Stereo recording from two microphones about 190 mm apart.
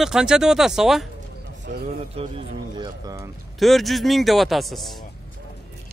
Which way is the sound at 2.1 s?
30° right (ahead or behind).